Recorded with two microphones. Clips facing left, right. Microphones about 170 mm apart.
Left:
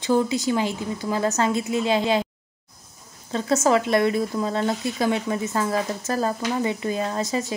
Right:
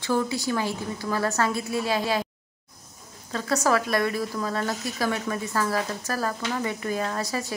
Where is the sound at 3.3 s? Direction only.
25° left (ahead or behind).